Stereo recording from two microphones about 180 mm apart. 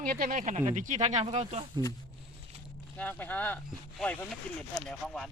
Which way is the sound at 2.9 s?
10° left (ahead or behind).